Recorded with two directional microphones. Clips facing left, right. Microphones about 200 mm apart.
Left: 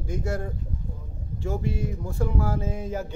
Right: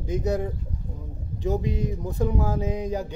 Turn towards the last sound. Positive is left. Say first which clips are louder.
# right 3 dB
turn(degrees=-15)  # may be behind; listen again after turning